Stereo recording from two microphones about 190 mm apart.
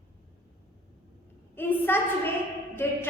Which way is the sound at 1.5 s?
10° left (ahead or behind).